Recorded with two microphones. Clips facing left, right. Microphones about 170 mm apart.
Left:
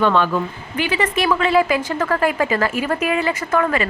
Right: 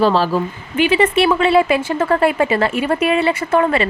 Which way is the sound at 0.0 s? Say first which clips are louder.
Right 2 dB; 35° right (ahead or behind).